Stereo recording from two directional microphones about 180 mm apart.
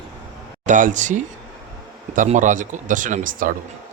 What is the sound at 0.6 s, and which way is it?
Speech, 45° right (ahead or behind).